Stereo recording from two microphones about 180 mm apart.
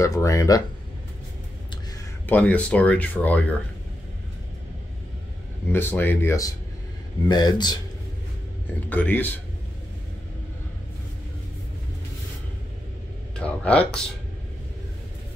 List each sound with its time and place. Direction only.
0.0 s speech: 15° left (ahead or behind)
2.2 s speech: 10° left (ahead or behind)
5.7 s speech: 10° left (ahead or behind)
8.6 s speech: 10° left (ahead or behind)
13.4 s a sound: 5° left (ahead or behind)